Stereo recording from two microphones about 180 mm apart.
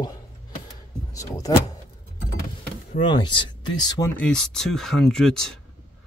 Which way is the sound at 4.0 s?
5° left (ahead or behind).